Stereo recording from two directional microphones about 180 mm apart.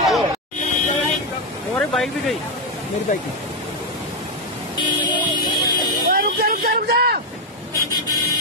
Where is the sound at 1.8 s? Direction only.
Centre (ahead or behind).